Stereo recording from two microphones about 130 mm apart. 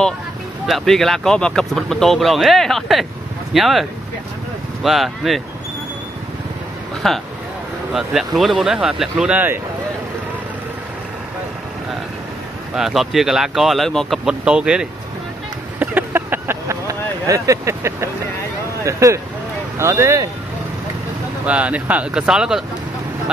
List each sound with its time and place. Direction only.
0.7 s speech: centre (ahead or behind)
4.8 s speech: centre (ahead or behind)
7.0 s speech: centre (ahead or behind)
12.7 s speech: centre (ahead or behind)
15.8 s a sound: 15° right (ahead or behind)
18.9 s speech: 25° right (ahead or behind)
21.5 s speech: 10° right (ahead or behind)